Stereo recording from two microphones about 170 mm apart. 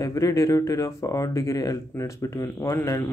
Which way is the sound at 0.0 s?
20° left (ahead or behind).